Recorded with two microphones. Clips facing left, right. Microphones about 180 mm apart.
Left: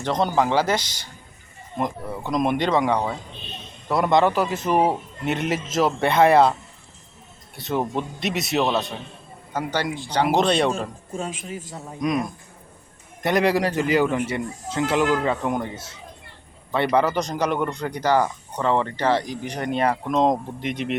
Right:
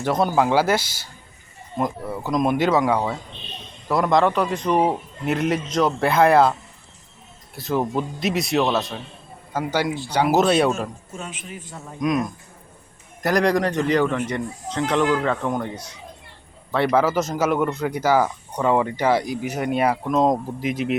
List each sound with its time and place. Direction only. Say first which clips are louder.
0.0 s speech: right 2 dB; 10° right (ahead or behind)
7.5 s speech: right 2 dB; centre (ahead or behind)
11.1 s a man's voice: left 5 dB; 35° left (ahead or behind)
11.9 s speech: right 2 dB; centre (ahead or behind)
16.7 s speech: right 1 dB; centre (ahead or behind)